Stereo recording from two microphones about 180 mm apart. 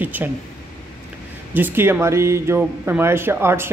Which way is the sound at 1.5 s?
10° right (ahead or behind).